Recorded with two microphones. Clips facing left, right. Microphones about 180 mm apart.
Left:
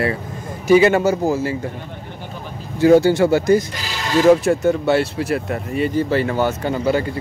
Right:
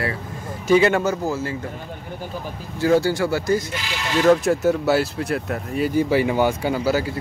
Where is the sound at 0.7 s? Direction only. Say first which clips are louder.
Left 4 dB; 5° left (ahead or behind).